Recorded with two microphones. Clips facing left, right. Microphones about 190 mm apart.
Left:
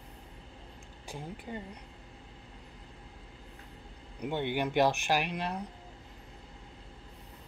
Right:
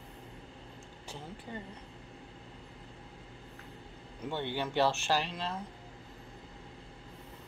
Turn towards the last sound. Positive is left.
turn(degrees=15)  # may be behind; listen again after turning